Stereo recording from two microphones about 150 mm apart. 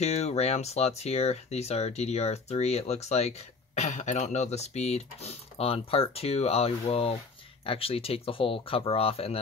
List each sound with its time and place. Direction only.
0.0 s speech: 45° left (ahead or behind)